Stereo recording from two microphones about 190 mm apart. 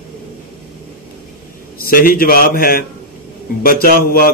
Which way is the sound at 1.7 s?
50° left (ahead or behind).